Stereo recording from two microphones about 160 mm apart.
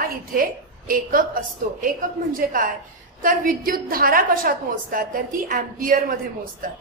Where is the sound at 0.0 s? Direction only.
65° right (ahead or behind).